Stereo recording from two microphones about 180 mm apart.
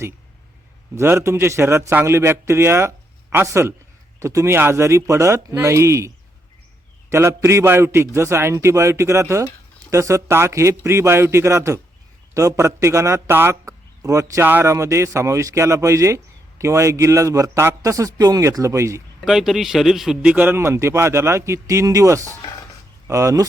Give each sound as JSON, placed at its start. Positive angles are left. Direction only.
{"t": 0.9, "sound": "a man's voice", "side_deg": -15}
{"t": 7.1, "sound": "a man's voice", "side_deg": -15}
{"t": 19.2, "sound": "a man's voice", "side_deg": 0}
{"t": 22.4, "sound": "a sound", "side_deg": 20}
{"t": 23.0, "sound": "a man's voice", "side_deg": -15}